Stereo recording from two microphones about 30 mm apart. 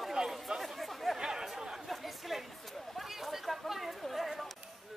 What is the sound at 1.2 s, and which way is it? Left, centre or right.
Chatter, right.